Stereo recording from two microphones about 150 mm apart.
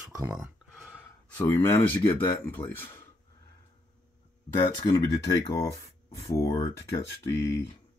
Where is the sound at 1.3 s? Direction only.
20° left (ahead or behind).